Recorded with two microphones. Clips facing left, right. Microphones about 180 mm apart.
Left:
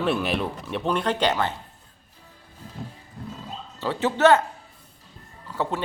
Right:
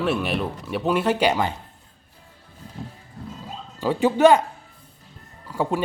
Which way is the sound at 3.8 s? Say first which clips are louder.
Right 4 dB; 15° right (ahead or behind).